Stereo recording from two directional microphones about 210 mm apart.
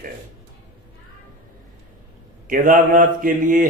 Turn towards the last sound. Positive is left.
turn(degrees=-40)  # may be behind; listen again after turning